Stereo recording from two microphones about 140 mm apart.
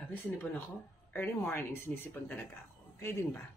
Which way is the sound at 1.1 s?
15° left (ahead or behind).